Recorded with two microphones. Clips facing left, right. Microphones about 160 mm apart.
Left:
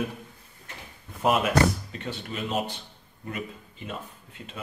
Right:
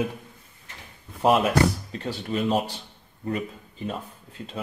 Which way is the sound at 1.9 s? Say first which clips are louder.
Right 6 dB; 35° right (ahead or behind).